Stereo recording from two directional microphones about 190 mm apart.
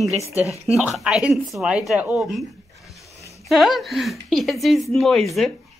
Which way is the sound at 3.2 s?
15° left (ahead or behind).